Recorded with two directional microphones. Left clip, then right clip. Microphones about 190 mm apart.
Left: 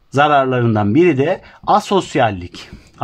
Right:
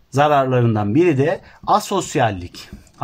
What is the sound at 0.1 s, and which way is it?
A man's voice, 40° left (ahead or behind).